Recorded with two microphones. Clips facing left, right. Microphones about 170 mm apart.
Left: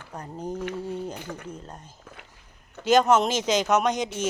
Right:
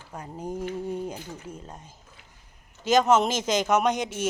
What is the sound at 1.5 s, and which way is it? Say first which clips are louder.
Speech: left 1 dB; 5° right (ahead or behind).